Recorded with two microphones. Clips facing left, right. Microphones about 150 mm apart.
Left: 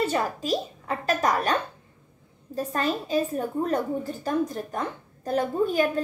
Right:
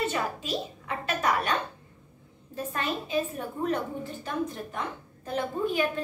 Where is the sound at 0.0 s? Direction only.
40° left (ahead or behind).